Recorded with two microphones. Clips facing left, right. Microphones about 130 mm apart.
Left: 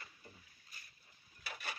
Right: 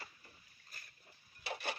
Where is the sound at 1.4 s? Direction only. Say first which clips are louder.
Right 6 dB; 30° right (ahead or behind).